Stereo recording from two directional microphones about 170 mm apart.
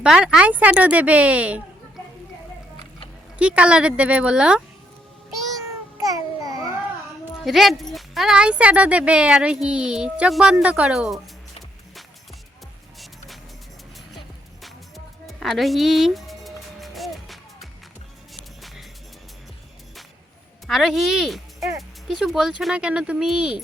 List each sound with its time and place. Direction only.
0.0 s a woman's voice: 5° right (ahead or behind)
3.3 s a woman's voice: 5° right (ahead or behind)
6.1 s babbling: 20° right (ahead or behind)
7.4 s speech: centre (ahead or behind)
13.0 s music: centre (ahead or behind)
14.6 s music: centre (ahead or behind)
20.7 s speech: centre (ahead or behind)